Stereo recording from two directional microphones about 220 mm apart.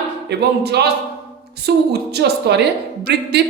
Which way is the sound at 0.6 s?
50° right (ahead or behind).